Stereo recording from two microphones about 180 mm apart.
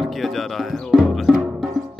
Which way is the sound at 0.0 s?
Centre (ahead or behind).